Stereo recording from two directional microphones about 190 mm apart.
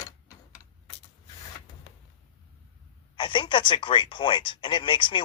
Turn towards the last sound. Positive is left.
turn(degrees=25)  # may be behind; listen again after turning